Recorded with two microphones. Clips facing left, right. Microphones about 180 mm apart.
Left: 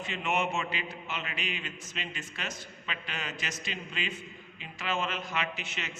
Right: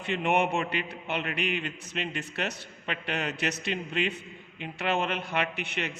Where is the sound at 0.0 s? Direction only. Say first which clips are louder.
Right 5 dB; 60° right (ahead or behind).